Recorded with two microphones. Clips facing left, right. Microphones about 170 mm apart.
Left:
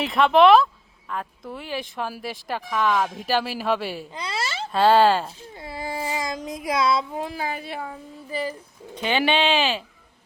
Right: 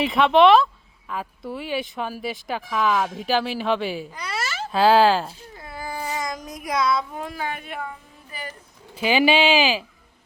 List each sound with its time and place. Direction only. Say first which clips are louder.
0.0 s speech: even; centre (ahead or behind)
4.1 s speech: left 1 dB; 25° left (ahead or behind)
4.7 s speech: right 1 dB; centre (ahead or behind)
5.5 s child singing: left 2 dB; 30° left (ahead or behind)
9.0 s speech: right 3 dB; 5° right (ahead or behind)